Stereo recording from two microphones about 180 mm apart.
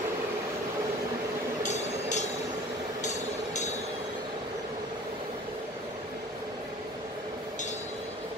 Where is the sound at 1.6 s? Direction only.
40° left (ahead or behind).